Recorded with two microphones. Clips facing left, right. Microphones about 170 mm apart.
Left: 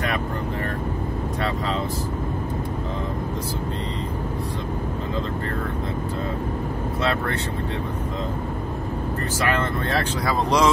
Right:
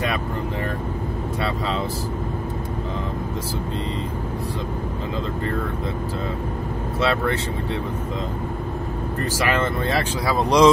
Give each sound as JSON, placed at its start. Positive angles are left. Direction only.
{"t": 10.2, "sound": "speech", "side_deg": -15}